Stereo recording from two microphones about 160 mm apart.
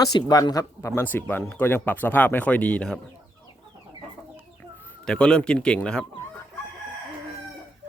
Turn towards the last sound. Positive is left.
turn(degrees=5)  # may be behind; listen again after turning